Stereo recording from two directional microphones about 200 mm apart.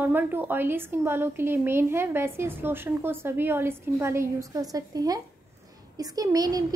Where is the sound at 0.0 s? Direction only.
10° right (ahead or behind).